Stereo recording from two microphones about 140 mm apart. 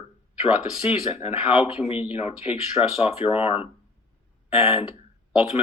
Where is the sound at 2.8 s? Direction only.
40° left (ahead or behind).